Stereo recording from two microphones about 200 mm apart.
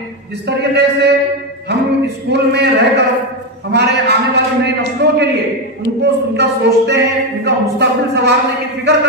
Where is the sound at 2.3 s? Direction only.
55° right (ahead or behind).